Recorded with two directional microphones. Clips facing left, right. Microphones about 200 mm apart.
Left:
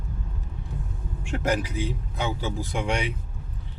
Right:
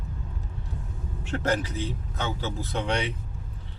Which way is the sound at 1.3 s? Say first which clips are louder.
Left 1 dB; 10° left (ahead or behind).